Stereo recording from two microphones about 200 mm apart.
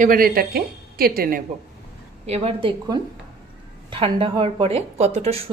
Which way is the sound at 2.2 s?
30° right (ahead or behind).